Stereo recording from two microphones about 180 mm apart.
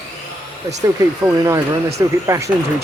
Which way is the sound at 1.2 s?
15° right (ahead or behind).